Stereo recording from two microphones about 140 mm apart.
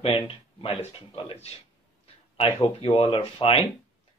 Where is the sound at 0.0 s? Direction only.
40° left (ahead or behind).